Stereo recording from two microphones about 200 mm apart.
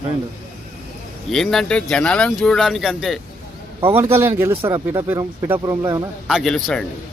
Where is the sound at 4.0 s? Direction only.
10° right (ahead or behind).